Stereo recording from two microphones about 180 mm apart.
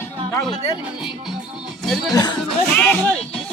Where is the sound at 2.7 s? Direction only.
5° left (ahead or behind).